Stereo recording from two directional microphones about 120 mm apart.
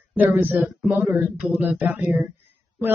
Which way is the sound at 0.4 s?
15° right (ahead or behind).